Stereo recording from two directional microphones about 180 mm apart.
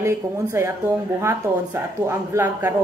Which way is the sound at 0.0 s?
15° right (ahead or behind).